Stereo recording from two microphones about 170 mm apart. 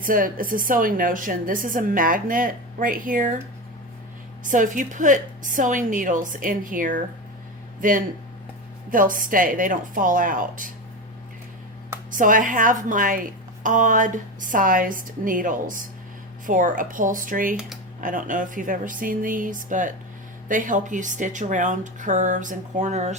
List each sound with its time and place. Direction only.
0.0 s a woman's voice: 55° right (ahead or behind)
4.4 s a woman's voice: 50° right (ahead or behind)
12.1 s a woman's voice: 50° right (ahead or behind)